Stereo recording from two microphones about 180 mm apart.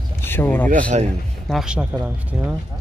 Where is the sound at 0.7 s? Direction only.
45° right (ahead or behind).